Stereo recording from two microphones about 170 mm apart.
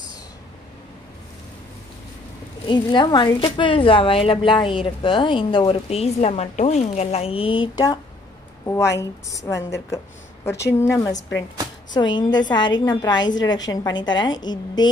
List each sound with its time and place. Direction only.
2.6 s a woman's voice: 25° left (ahead or behind)
10.7 s a woman's voice: 15° left (ahead or behind)